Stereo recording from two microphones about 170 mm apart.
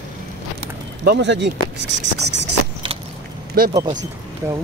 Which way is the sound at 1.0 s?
90° right.